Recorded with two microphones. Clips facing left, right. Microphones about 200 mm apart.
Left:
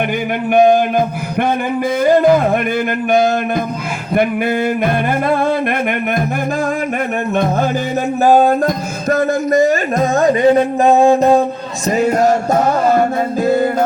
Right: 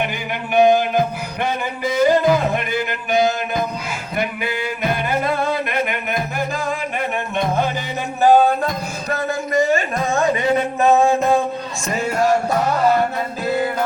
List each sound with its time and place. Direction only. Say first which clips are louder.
0.5 s music: left 3 dB; 50° left (ahead or behind)
2.0 s music: left 4 dB; 55° left (ahead or behind)
8.2 s speech: left 2 dB; 40° left (ahead or behind)
11.9 s music: left 6 dB; 40° left (ahead or behind)